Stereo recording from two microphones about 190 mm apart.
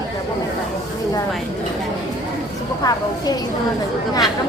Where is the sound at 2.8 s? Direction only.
20° left (ahead or behind).